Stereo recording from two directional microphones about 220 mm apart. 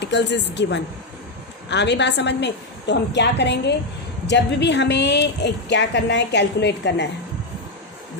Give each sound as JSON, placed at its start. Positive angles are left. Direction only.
{"t": 0.0, "sound": "speech", "side_deg": 50}